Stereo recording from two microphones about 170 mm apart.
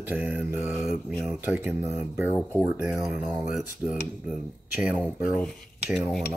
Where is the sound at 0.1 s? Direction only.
5° right (ahead or behind).